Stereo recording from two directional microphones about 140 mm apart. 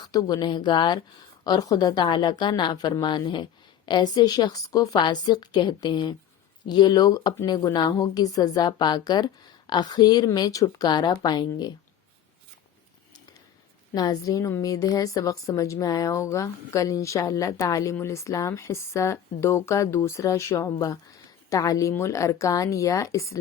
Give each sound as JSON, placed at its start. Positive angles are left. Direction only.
{"t": 0.0, "sound": "a woman's voice", "side_deg": 30}
{"t": 13.9, "sound": "speech", "side_deg": 25}